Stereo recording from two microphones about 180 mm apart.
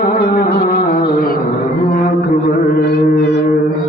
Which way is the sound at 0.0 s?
65° left (ahead or behind).